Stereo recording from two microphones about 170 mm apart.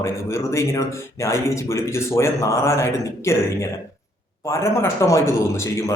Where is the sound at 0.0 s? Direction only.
15° left (ahead or behind).